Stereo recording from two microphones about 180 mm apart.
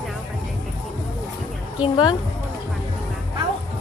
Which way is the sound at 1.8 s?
25° left (ahead or behind).